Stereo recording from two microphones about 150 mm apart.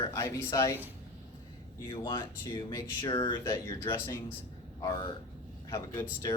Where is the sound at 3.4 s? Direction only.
20° left (ahead or behind).